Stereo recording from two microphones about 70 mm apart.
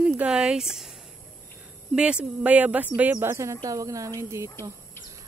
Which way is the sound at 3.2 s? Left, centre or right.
Right.